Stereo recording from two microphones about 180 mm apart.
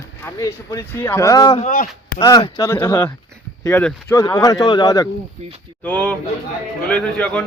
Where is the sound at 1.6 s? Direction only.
50° left (ahead or behind).